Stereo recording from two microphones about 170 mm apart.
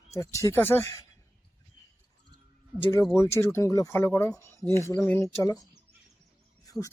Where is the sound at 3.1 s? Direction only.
15° left (ahead or behind).